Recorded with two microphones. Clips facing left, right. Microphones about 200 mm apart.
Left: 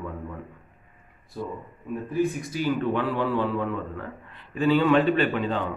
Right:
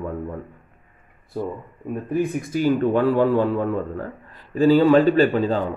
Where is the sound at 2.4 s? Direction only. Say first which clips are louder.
Right 6 dB; 45° right (ahead or behind).